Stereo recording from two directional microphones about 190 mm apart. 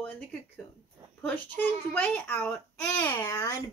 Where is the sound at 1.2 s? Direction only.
10° left (ahead or behind).